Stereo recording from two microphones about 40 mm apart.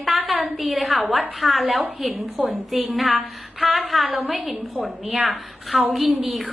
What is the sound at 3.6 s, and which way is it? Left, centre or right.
A woman's voice, centre.